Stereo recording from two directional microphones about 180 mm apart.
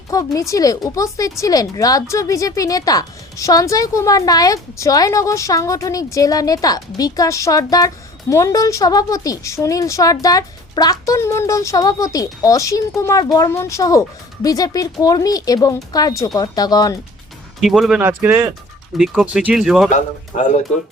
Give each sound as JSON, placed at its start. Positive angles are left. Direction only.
{"t": 0.1, "sound": "speech", "side_deg": 20}
{"t": 17.6, "sound": "speech", "side_deg": 0}
{"t": 19.9, "sound": "speech", "side_deg": 40}